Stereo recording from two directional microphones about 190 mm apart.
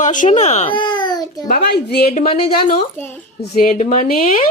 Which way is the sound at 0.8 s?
25° left (ahead or behind).